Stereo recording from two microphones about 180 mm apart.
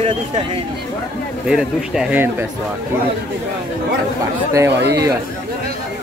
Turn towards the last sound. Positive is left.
turn(degrees=-20)  # may be behind; listen again after turning